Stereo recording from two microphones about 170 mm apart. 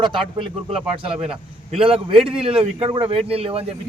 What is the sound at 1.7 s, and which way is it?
A man's voice, 30° right (ahead or behind).